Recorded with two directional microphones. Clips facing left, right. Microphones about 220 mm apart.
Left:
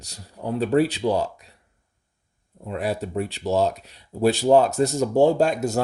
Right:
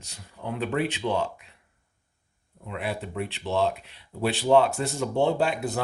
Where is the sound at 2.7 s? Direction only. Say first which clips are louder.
Left 6 dB; 40° left (ahead or behind).